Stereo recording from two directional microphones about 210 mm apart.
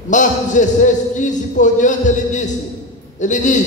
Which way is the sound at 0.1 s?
35° left (ahead or behind).